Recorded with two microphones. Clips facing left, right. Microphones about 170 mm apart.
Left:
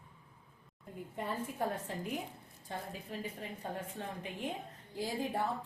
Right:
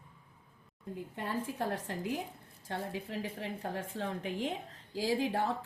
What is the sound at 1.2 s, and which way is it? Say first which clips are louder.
A woman's voice: right 1 dB; 90° right.